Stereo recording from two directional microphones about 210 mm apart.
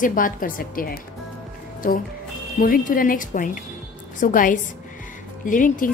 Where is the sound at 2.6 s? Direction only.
40° left (ahead or behind).